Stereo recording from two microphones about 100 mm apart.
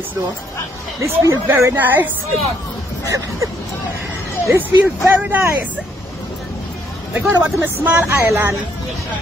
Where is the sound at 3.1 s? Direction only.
35° right (ahead or behind).